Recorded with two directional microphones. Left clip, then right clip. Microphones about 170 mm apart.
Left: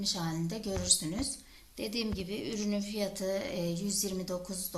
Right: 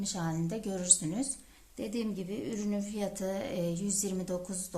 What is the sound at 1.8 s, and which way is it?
A woman's voice, 45° right (ahead or behind).